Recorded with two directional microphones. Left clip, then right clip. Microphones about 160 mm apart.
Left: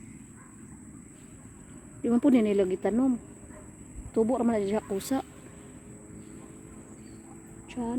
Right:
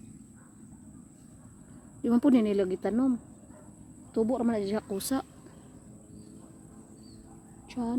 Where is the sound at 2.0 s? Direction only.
15° right (ahead or behind).